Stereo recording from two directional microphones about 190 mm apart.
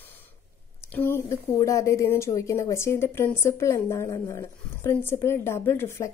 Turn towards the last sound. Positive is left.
turn(degrees=15)  # may be behind; listen again after turning